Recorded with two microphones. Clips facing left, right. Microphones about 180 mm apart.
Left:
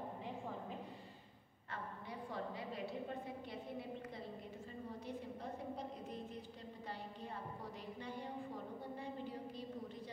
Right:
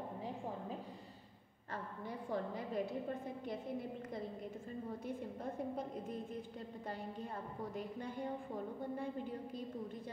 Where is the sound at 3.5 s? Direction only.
45° right (ahead or behind).